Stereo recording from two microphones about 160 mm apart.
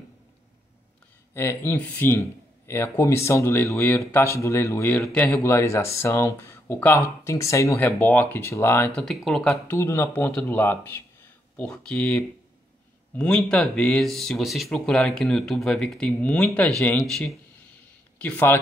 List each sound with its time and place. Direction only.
1.3 s speech: 15° left (ahead or behind)
9.0 s speech: centre (ahead or behind)
9.8 s speech: 15° left (ahead or behind)
18.2 s speech: 15° left (ahead or behind)